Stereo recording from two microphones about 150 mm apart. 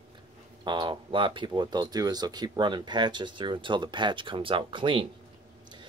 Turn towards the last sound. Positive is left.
turn(degrees=-35)  # may be behind; listen again after turning